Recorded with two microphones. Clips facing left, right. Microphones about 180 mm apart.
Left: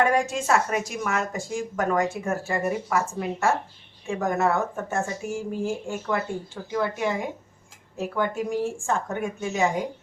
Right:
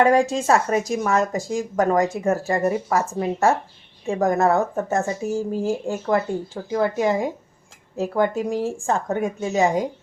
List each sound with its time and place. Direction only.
0.0 s speech: 35° right (ahead or behind)